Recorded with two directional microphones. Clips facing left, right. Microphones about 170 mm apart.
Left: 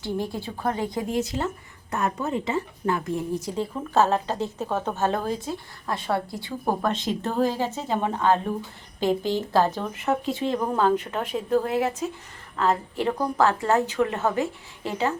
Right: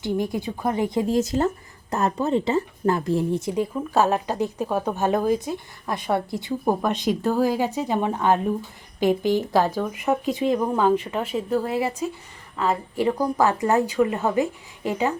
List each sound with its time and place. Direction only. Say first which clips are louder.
0.0 s a woman's voice: right 4 dB; 15° right (ahead or behind)
1.1 s speech: right 5 dB; 45° right (ahead or behind)
3.6 s a woman's voice: even; 15° right (ahead or behind)